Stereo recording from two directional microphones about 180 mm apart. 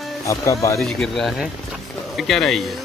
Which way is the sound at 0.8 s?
5° left (ahead or behind).